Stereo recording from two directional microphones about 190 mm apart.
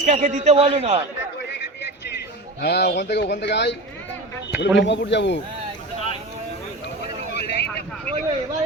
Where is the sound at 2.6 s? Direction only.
60° left (ahead or behind).